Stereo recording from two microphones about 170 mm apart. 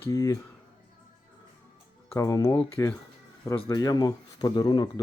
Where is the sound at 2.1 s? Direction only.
15° left (ahead or behind).